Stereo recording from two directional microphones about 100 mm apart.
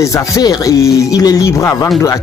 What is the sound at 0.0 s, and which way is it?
Speech, 40° left (ahead or behind).